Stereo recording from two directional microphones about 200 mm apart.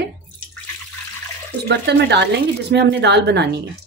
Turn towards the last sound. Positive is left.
turn(degrees=-60)  # may be behind; listen again after turning